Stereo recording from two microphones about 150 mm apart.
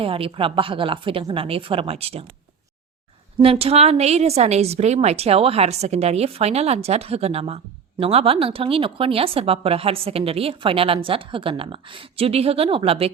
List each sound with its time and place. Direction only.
0.0 s a woman's voice: 40° right (ahead or behind)
3.4 s a woman's voice: 40° right (ahead or behind)